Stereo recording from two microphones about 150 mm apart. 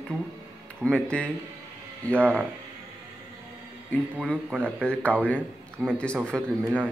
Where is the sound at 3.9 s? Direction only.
5° left (ahead or behind).